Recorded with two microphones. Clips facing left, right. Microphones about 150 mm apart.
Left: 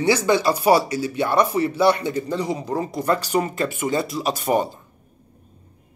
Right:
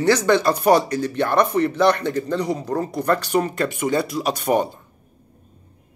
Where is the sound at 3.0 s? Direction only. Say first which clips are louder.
Right 1 dB; 65° right (ahead or behind).